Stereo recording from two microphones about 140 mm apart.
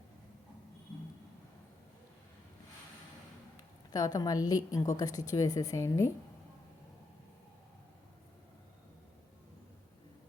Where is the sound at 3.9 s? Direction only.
25° left (ahead or behind).